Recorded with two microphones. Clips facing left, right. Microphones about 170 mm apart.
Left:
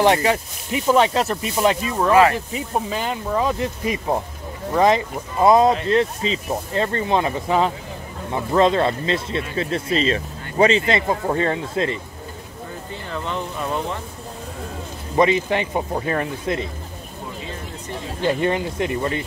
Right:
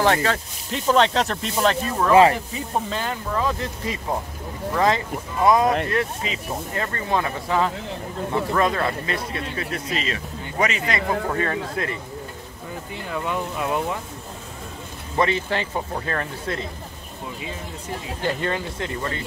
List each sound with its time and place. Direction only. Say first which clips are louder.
0.0 s speech: left 3 dB; 15° left (ahead or behind)
13.1 s speech: right 1 dB; 10° right (ahead or behind)
15.1 s speech: left 5 dB; 15° left (ahead or behind)
18.2 s speech: left 6 dB; 20° left (ahead or behind)